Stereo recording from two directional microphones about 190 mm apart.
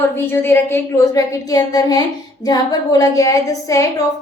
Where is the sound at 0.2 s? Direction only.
10° left (ahead or behind).